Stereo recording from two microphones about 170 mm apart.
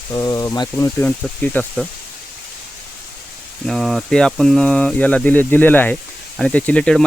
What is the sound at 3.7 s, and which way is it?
Speech, centre (ahead or behind).